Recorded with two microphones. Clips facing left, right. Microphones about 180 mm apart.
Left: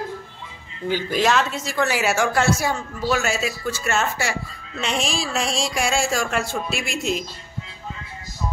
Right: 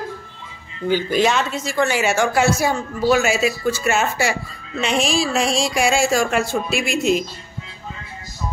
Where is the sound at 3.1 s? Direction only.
5° right (ahead or behind).